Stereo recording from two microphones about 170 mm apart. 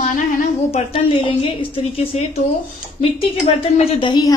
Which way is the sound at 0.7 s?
35° left (ahead or behind).